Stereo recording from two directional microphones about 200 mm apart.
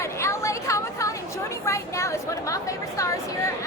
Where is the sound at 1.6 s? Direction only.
15° left (ahead or behind).